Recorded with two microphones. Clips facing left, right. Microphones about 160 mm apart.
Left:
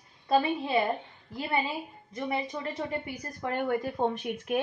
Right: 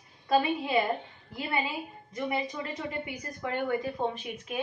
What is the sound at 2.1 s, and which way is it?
A woman's voice, 35° left (ahead or behind).